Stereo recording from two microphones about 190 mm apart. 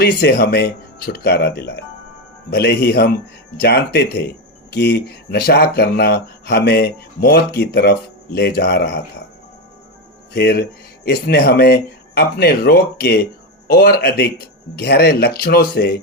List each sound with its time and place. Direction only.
0.0 s speech: 55° left (ahead or behind)
10.3 s speech: 55° left (ahead or behind)